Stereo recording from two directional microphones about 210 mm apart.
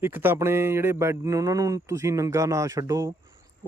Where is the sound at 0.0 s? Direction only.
10° right (ahead or behind).